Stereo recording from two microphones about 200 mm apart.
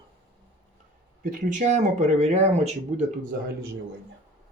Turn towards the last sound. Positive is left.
turn(degrees=-35)  # may be behind; listen again after turning